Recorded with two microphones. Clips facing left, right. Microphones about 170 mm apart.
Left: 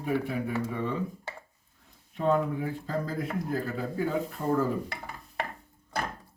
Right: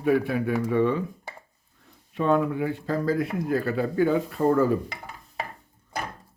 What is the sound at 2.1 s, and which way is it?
Speech, 80° right.